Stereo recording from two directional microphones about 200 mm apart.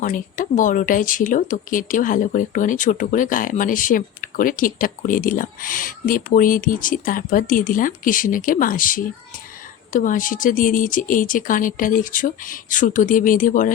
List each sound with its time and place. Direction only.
0.0 s speech: 40° left (ahead or behind)